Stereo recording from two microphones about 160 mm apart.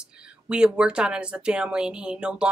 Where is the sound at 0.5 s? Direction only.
5° right (ahead or behind).